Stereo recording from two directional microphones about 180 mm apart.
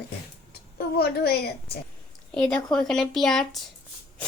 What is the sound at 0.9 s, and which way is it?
Speech, 60° left (ahead or behind).